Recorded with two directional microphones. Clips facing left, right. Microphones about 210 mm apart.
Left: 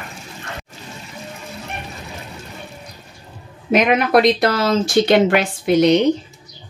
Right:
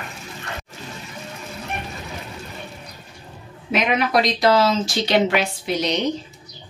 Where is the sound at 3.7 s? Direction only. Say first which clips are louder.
Left 5 dB; 55° left (ahead or behind).